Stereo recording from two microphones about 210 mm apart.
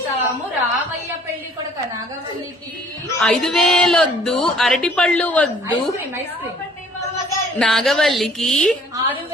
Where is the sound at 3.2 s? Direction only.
Centre (ahead or behind).